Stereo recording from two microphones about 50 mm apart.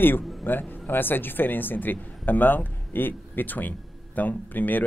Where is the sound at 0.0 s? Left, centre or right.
Left.